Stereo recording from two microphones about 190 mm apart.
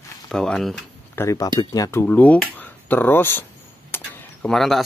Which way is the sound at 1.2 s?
15° left (ahead or behind).